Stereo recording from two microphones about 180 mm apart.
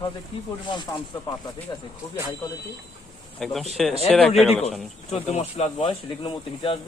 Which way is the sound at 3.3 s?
Centre (ahead or behind).